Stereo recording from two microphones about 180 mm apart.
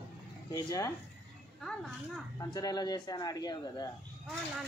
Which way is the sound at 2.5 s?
20° left (ahead or behind).